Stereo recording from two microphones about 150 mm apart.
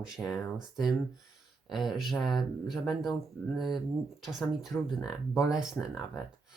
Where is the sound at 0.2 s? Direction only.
10° left (ahead or behind).